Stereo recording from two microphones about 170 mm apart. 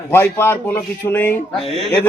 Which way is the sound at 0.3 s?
15° left (ahead or behind).